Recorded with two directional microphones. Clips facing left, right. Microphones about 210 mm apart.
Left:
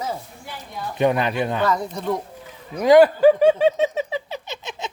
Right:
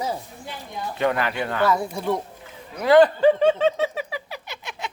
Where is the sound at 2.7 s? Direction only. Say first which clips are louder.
Left 2 dB; 15° left (ahead or behind).